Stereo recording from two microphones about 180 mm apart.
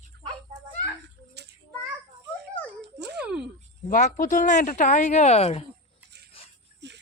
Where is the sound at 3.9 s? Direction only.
45° left (ahead or behind).